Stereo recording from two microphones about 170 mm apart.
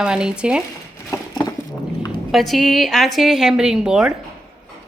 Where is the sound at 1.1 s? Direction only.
20° left (ahead or behind).